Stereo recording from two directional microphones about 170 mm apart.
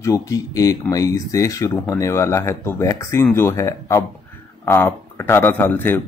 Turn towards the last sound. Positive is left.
turn(degrees=10)  # may be behind; listen again after turning